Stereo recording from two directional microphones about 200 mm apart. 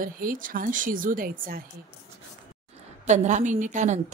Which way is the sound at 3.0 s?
35° right (ahead or behind).